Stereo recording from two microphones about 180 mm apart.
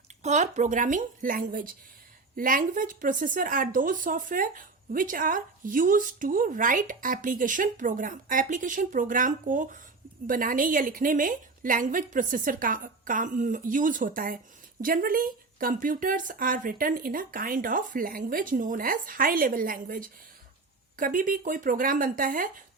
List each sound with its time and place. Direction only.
0.2 s a woman's voice: 40° right (ahead or behind)